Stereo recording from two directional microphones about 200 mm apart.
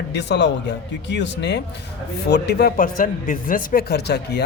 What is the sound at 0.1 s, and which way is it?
Speech, 60° left (ahead or behind).